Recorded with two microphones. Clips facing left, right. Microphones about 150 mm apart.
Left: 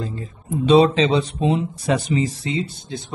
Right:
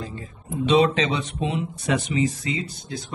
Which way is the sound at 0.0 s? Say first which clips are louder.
Left 5 dB; 35° left (ahead or behind).